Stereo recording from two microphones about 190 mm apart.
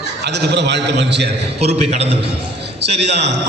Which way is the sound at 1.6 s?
35° right (ahead or behind).